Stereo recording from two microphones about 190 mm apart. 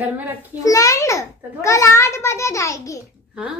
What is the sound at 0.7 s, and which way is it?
A child's voice, 15° left (ahead or behind).